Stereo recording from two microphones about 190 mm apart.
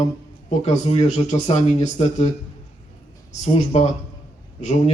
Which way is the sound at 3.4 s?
35° left (ahead or behind).